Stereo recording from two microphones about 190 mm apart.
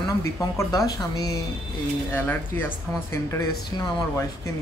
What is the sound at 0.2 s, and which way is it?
Speech, 15° left (ahead or behind).